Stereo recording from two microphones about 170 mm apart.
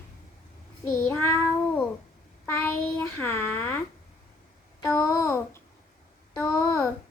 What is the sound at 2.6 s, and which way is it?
Child singing, 15° left (ahead or behind).